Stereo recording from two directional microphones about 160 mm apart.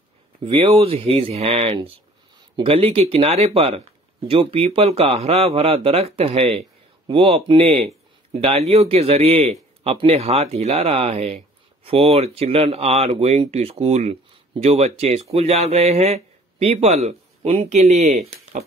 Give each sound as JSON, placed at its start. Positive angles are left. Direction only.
{"t": 0.4, "sound": "speech", "side_deg": -35}